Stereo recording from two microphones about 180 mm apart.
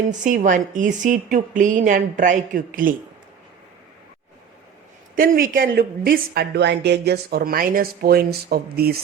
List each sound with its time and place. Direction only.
0.0 s a woman's voice: 45° right (ahead or behind)
5.1 s a woman's voice: 50° right (ahead or behind)